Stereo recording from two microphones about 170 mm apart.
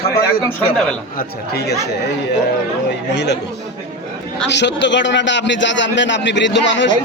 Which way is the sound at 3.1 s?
85° left.